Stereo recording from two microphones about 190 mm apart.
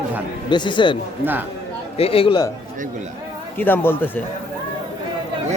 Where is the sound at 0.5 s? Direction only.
25° left (ahead or behind).